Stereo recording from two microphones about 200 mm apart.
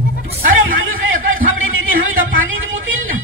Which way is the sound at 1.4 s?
80° right.